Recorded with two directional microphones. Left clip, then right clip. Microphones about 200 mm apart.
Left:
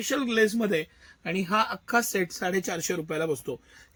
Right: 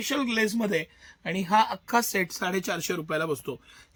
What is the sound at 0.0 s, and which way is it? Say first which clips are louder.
A man's voice: left 2 dB; 45° right (ahead or behind).